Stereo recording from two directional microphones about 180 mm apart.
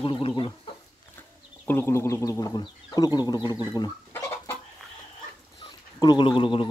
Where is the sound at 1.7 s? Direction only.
15° left (ahead or behind).